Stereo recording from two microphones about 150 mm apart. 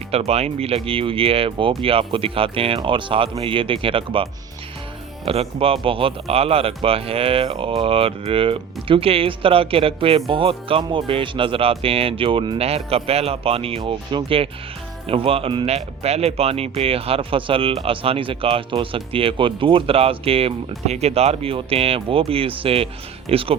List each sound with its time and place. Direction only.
0.1 s speech: 45° right (ahead or behind)